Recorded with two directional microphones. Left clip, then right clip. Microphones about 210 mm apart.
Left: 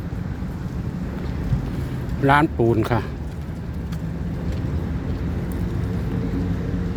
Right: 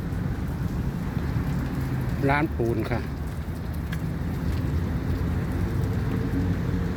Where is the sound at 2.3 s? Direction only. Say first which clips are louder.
Left 8 dB; 25° left (ahead or behind).